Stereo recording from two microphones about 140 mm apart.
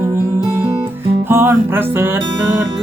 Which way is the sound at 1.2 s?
15° right (ahead or behind).